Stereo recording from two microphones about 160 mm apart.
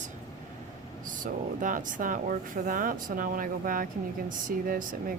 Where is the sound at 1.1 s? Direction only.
55° right (ahead or behind).